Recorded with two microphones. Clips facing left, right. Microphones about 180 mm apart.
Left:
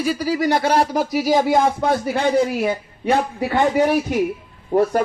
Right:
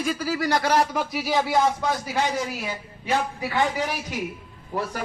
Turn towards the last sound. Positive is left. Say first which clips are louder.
# left 12 dB
turn(degrees=50)  # may be behind; listen again after turning